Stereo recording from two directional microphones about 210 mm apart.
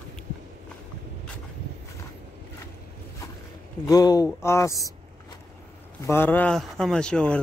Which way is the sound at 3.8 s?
15° left (ahead or behind).